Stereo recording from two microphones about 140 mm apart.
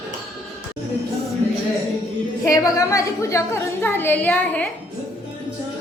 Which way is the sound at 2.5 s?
25° left (ahead or behind).